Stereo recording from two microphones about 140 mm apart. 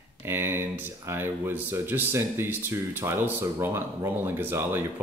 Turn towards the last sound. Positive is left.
turn(degrees=-15)  # may be behind; listen again after turning